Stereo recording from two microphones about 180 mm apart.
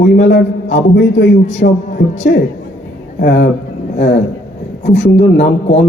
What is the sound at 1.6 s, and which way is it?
Speech, 70° left (ahead or behind).